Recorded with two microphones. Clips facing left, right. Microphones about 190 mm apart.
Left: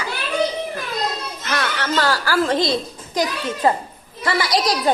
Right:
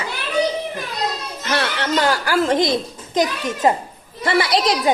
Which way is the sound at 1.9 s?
20° right (ahead or behind).